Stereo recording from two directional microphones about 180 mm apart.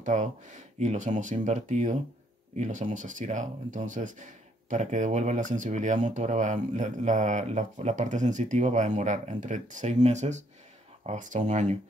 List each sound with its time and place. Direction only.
0.0 s speech: 45° right (ahead or behind)